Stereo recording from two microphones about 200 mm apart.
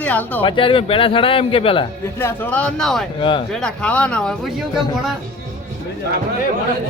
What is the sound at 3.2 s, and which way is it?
Speech, 25° left (ahead or behind).